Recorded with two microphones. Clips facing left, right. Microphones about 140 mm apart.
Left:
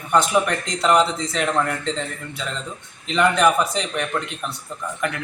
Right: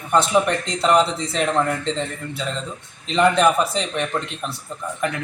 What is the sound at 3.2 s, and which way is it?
Speech, 30° right (ahead or behind).